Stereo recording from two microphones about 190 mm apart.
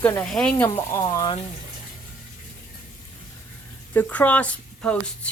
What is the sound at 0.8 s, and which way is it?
Speech, 20° left (ahead or behind).